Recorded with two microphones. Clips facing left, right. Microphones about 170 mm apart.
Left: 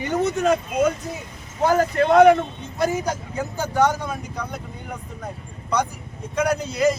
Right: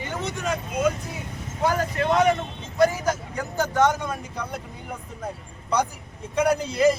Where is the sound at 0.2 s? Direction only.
50° left (ahead or behind).